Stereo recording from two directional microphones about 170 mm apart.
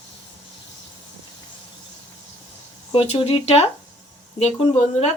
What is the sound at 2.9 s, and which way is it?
Speech, 35° left (ahead or behind).